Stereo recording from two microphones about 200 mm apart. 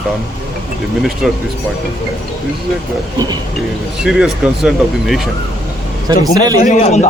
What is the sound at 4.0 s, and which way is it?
Speech, centre (ahead or behind).